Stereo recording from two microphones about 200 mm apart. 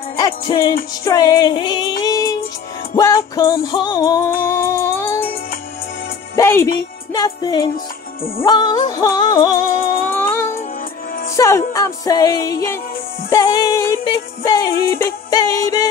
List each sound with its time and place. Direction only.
0.2 s music: 20° left (ahead or behind)
6.3 s music: 15° left (ahead or behind)